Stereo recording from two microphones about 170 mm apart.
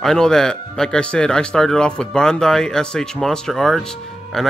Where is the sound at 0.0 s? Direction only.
5° left (ahead or behind).